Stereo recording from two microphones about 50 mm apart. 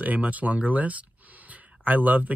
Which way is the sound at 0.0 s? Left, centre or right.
Right.